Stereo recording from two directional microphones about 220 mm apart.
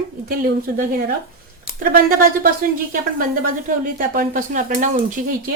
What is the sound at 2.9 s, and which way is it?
Speech, 40° right (ahead or behind).